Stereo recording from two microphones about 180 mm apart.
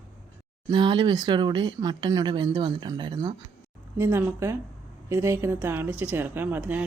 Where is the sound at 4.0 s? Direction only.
10° right (ahead or behind).